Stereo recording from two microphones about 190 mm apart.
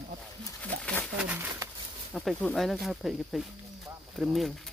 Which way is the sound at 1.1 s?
5° right (ahead or behind).